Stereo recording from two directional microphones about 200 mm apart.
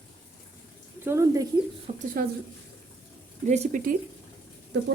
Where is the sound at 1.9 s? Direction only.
35° right (ahead or behind).